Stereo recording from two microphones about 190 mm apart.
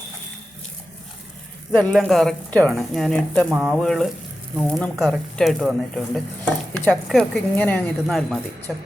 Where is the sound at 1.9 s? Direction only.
Centre (ahead or behind).